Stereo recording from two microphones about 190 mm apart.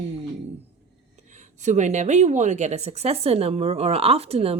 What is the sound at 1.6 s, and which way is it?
Speech, 40° right (ahead or behind).